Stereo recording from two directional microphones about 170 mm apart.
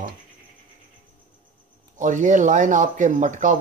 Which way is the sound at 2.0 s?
45° right (ahead or behind).